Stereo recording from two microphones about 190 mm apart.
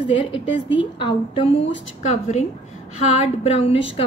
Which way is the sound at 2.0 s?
35° left (ahead or behind).